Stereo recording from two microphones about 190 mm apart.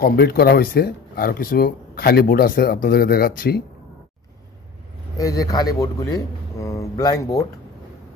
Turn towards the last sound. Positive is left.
turn(degrees=20)  # may be behind; listen again after turning